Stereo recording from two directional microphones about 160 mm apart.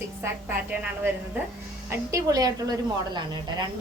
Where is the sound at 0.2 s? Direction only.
10° right (ahead or behind).